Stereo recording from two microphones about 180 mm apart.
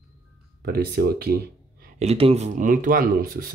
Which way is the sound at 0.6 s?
60° right (ahead or behind).